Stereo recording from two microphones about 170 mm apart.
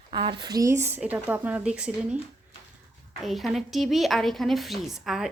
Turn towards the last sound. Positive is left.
turn(degrees=0)  # may be behind; listen again after turning